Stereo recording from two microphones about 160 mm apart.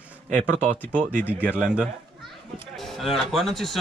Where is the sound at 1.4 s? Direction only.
5° right (ahead or behind).